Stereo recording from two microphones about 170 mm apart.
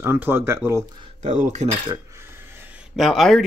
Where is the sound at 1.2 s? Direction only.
45° right (ahead or behind).